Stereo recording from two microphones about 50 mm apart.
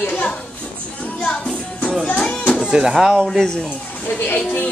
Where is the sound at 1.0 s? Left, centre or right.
Left.